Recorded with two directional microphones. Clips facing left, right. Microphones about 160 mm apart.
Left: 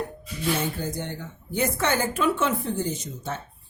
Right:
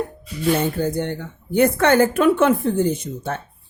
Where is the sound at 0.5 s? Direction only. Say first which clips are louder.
Right 9 dB; 55° right (ahead or behind).